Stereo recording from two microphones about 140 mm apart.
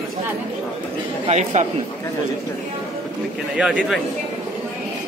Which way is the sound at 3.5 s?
5° right (ahead or behind).